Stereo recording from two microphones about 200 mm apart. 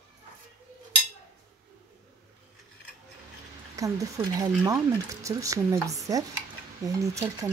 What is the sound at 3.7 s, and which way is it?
Speech, 15° right (ahead or behind).